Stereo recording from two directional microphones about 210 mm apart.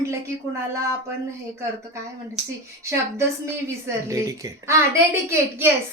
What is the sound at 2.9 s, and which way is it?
A woman's voice, 15° right (ahead or behind).